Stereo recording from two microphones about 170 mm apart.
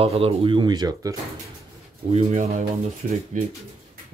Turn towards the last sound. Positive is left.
turn(degrees=-50)  # may be behind; listen again after turning